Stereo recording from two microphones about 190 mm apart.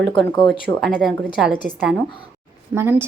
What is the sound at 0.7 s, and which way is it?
Speech, centre (ahead or behind).